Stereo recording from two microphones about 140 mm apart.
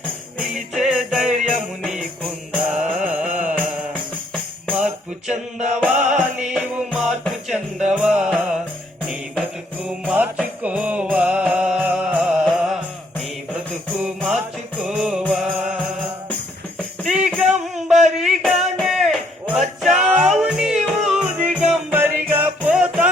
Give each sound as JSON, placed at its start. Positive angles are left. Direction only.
{"t": 0.3, "sound": "music", "side_deg": -5}
{"t": 5.8, "sound": "music", "side_deg": -5}
{"t": 9.8, "sound": "music", "side_deg": -5}
{"t": 14.3, "sound": "music", "side_deg": -5}
{"t": 17.0, "sound": "music", "side_deg": -5}